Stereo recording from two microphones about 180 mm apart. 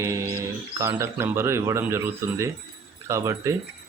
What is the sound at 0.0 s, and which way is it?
Speech, 15° right (ahead or behind).